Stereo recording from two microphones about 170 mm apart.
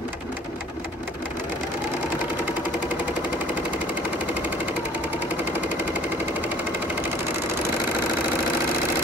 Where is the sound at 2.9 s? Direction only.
10° right (ahead or behind).